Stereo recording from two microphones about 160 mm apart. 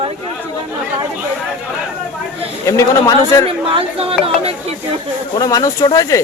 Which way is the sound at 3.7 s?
35° right (ahead or behind).